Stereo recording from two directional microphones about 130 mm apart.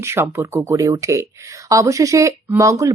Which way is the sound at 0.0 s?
20° right (ahead or behind).